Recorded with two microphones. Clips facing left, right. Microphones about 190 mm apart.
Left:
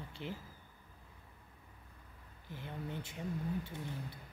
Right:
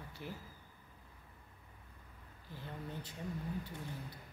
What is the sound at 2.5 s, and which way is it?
Speech, 20° left (ahead or behind).